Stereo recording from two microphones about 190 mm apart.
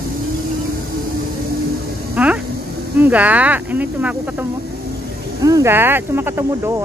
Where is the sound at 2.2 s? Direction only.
5° right (ahead or behind).